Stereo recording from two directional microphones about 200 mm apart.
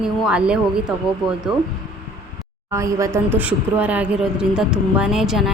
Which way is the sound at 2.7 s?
15° right (ahead or behind).